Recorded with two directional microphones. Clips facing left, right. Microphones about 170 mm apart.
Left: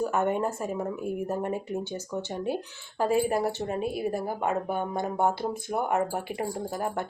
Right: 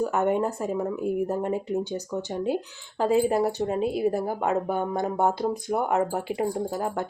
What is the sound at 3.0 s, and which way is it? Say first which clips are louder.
A woman's voice: right 3 dB; 20° right (ahead or behind).